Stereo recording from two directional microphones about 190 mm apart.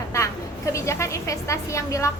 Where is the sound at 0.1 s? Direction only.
15° left (ahead or behind).